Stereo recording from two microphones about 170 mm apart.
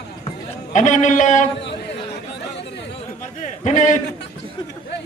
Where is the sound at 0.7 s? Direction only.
45° left (ahead or behind).